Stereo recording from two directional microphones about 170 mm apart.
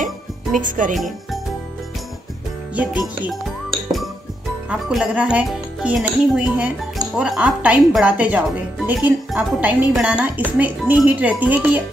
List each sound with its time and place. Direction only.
0.0 s music: 50° right (ahead or behind)
0.9 s speech: centre (ahead or behind)
4.6 s speech: 5° right (ahead or behind)